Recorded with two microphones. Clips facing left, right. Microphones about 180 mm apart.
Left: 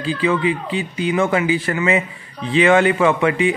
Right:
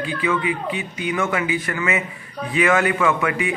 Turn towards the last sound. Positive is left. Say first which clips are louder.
# left 5 dB
turn(degrees=30)  # may be behind; listen again after turning